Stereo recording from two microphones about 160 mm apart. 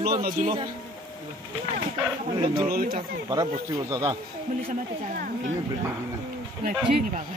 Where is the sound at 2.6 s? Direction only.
65° right (ahead or behind).